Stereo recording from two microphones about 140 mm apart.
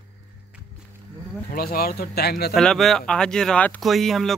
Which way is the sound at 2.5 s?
Centre (ahead or behind).